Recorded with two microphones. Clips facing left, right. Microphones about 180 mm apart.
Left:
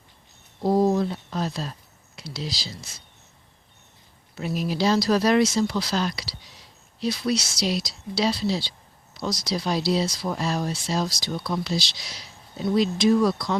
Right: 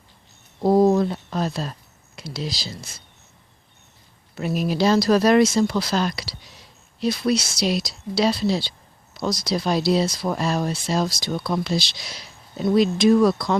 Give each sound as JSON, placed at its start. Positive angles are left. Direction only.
{"t": 0.6, "sound": "speech", "side_deg": -55}
{"t": 4.4, "sound": "speech", "side_deg": -55}